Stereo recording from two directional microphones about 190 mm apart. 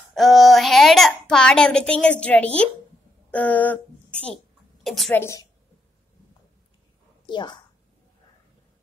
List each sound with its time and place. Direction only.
0.1 s a child's voice: centre (ahead or behind)
5.2 s a woman's voice: 15° left (ahead or behind)
7.2 s a woman's voice: 25° left (ahead or behind)